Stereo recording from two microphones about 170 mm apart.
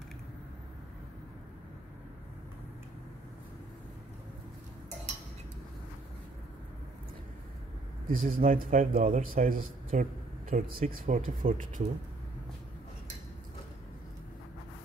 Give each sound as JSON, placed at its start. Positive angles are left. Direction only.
{"t": 8.1, "sound": "speech", "side_deg": -55}